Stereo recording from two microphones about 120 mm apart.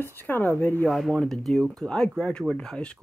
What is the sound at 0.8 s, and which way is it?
Speech, centre (ahead or behind).